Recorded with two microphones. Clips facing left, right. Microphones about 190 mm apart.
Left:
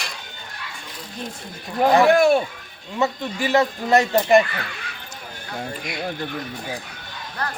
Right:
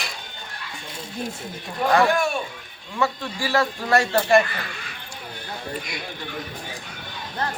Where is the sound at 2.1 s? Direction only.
70° left (ahead or behind).